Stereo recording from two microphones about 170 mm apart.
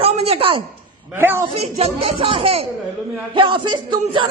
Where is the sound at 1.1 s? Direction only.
15° right (ahead or behind).